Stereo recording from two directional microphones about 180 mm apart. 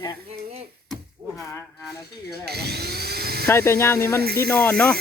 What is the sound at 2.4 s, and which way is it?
Speech, 60° right (ahead or behind).